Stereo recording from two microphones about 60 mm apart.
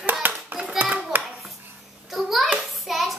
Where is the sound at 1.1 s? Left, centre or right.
Right.